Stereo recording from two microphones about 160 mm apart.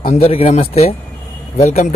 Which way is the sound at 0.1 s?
40° left (ahead or behind).